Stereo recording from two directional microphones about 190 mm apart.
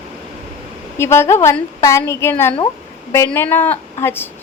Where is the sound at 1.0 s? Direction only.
15° left (ahead or behind).